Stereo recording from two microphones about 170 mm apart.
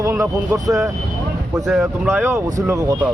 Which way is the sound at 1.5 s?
Centre (ahead or behind).